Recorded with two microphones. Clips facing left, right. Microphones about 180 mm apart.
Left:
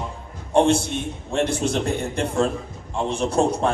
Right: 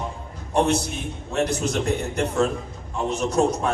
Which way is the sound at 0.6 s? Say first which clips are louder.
Left 3 dB; 30° left (ahead or behind).